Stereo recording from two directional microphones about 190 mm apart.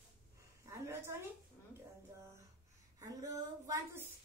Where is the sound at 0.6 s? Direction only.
15° right (ahead or behind).